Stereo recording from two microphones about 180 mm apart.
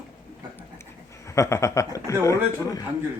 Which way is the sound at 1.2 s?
15° left (ahead or behind).